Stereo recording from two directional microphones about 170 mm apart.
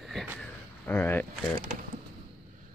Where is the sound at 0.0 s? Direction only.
Centre (ahead or behind).